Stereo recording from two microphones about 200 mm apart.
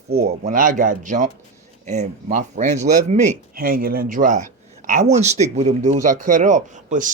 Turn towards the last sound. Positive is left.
turn(degrees=-40)  # may be behind; listen again after turning